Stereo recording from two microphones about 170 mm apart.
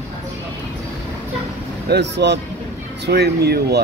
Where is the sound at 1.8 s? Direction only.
85° right.